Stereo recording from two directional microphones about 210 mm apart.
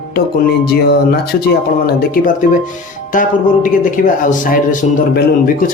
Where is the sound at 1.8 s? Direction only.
45° left (ahead or behind).